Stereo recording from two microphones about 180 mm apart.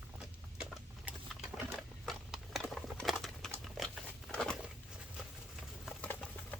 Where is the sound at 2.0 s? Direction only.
Centre (ahead or behind).